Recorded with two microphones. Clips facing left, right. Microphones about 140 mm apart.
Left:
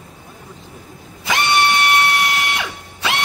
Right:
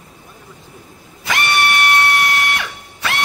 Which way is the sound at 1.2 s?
20° left (ahead or behind).